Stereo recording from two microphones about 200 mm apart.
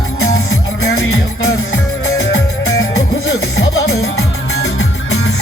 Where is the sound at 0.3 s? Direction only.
90° left.